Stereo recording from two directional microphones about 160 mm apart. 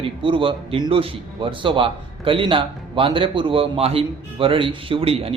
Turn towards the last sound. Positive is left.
turn(degrees=-35)  # may be behind; listen again after turning